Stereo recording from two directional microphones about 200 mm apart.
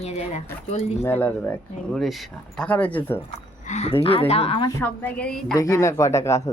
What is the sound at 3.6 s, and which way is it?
Speech, 35° left (ahead or behind).